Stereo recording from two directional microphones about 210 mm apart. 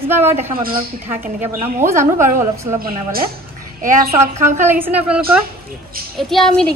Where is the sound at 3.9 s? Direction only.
40° right (ahead or behind).